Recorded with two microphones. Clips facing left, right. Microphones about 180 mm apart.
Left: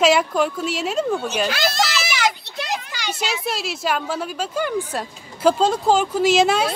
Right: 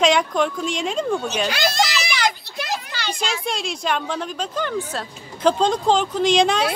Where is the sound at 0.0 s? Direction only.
5° left (ahead or behind).